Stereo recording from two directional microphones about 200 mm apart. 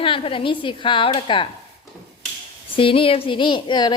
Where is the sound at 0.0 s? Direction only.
25° left (ahead or behind).